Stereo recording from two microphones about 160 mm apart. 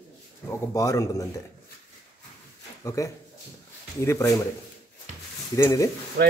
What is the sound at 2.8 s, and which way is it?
Speech, 20° left (ahead or behind).